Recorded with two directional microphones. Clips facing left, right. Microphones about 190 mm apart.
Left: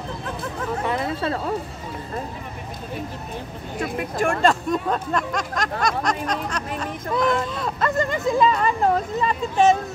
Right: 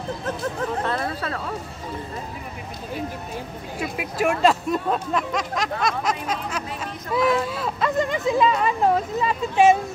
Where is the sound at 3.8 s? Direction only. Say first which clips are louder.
Left 1 dB; 5° right (ahead or behind).